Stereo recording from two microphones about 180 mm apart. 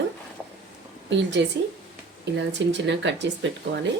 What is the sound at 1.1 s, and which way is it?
A woman's voice, 75° right (ahead or behind).